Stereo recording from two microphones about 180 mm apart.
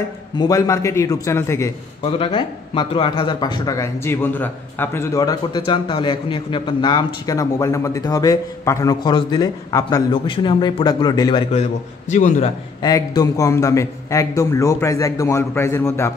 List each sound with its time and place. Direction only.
0.4 s a man's voice: 20° left (ahead or behind)
2.0 s speech: 30° left (ahead or behind)
11.5 s a man's voice: 40° left (ahead or behind)
12.8 s a man's voice: 20° left (ahead or behind)